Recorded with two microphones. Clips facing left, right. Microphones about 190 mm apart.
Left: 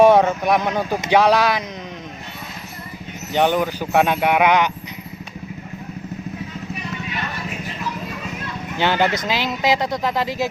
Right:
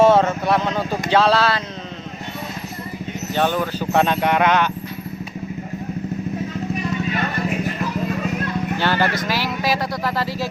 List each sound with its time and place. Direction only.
0.0 s speech: 15° left (ahead or behind)
3.3 s speech: 15° left (ahead or behind)
8.8 s speech: 20° left (ahead or behind)